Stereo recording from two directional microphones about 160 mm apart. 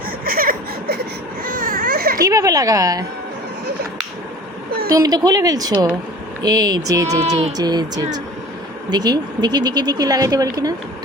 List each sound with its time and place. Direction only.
0.3 s a sound: 65° right (ahead or behind)
1.5 s baby cry: 60° right (ahead or behind)
2.2 s speech: 20° right (ahead or behind)
4.9 s speech: 20° right (ahead or behind)